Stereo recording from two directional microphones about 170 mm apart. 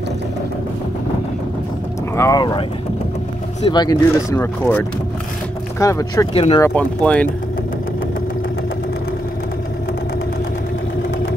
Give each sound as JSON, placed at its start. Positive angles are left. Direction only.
{"t": 2.1, "sound": "speech", "side_deg": 20}
{"t": 3.6, "sound": "speech", "side_deg": 25}
{"t": 6.3, "sound": "speech", "side_deg": 35}
{"t": 6.6, "sound": "speech", "side_deg": 10}